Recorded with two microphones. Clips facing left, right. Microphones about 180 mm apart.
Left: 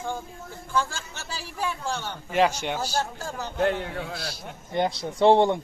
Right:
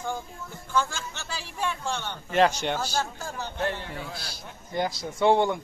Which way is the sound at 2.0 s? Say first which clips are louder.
Right 1 dB; 10° left (ahead or behind).